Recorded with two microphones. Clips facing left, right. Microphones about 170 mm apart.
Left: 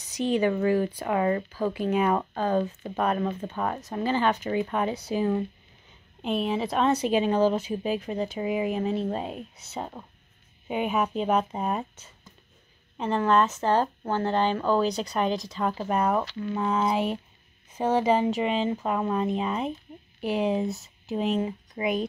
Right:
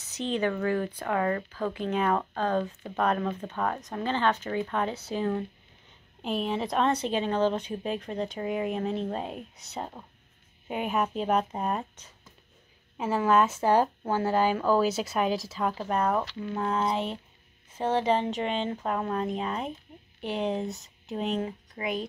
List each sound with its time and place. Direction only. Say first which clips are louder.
0.0 s a woman's voice: left 4 dB; 10° left (ahead or behind)
21.7 s speech: left 5 dB; 20° left (ahead or behind)